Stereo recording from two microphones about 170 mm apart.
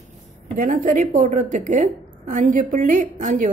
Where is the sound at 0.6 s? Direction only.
50° right (ahead or behind).